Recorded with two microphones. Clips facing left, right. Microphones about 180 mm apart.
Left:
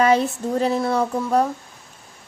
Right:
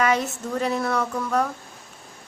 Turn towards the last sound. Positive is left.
turn(degrees=30)  # may be behind; listen again after turning